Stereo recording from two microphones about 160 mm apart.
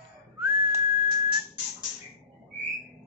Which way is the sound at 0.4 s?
30° right (ahead or behind).